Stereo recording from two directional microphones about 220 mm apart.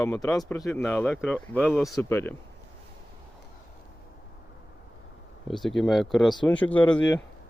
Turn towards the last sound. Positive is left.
turn(degrees=5)  # may be behind; listen again after turning